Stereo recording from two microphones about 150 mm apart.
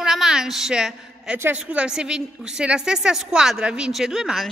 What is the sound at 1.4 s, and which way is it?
A woman's voice, 10° right (ahead or behind).